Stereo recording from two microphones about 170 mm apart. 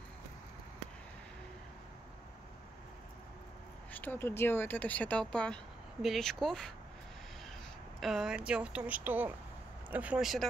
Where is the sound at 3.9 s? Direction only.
10° left (ahead or behind).